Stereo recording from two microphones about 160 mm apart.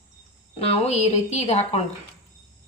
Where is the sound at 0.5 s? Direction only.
40° left (ahead or behind).